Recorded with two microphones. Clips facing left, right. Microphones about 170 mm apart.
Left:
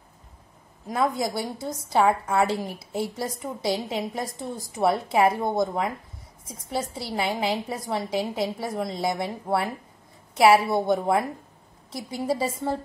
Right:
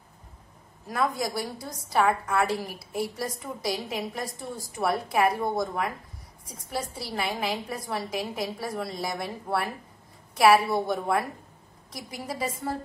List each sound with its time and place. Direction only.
0.8 s a woman's voice: 20° left (ahead or behind)